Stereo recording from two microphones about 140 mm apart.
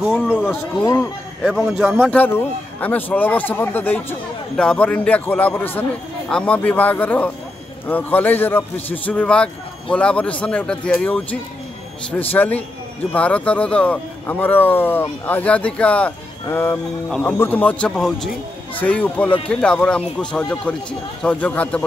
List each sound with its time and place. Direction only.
0.5 s speech: 15° left (ahead or behind)
1.4 s a man's voice: centre (ahead or behind)
2.0 s speech: 15° left (ahead or behind)